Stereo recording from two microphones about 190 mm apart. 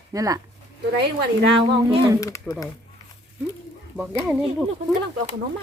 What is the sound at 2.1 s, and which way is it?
Speech, 15° left (ahead or behind).